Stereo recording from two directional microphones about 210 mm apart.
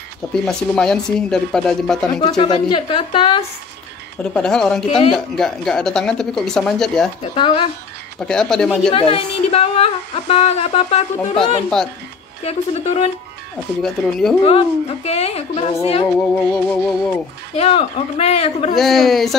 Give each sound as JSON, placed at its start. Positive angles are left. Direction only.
{"t": 0.5, "sound": "speech", "side_deg": 5}
{"t": 2.2, "sound": "speech", "side_deg": 20}
{"t": 4.2, "sound": "speech", "side_deg": 5}
{"t": 4.8, "sound": "speech", "side_deg": 30}
{"t": 5.1, "sound": "speech", "side_deg": 0}
{"t": 7.3, "sound": "speech", "side_deg": 25}
{"t": 8.3, "sound": "speech", "side_deg": 5}
{"t": 8.9, "sound": "speech", "side_deg": 25}
{"t": 12.4, "sound": "speech", "side_deg": 30}
{"t": 13.8, "sound": "speech", "side_deg": 0}
{"t": 14.4, "sound": "speech", "side_deg": 25}
{"t": 16.2, "sound": "music", "side_deg": 10}
{"t": 17.6, "sound": "speech", "side_deg": 30}
{"t": 18.8, "sound": "speech", "side_deg": 0}